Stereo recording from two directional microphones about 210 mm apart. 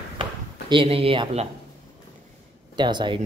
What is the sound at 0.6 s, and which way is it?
Speech, 25° right (ahead or behind).